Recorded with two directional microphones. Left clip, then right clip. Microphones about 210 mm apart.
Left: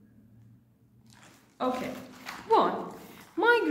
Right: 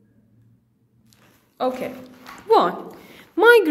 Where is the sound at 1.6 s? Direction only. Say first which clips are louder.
Right 7 dB; 40° right (ahead or behind).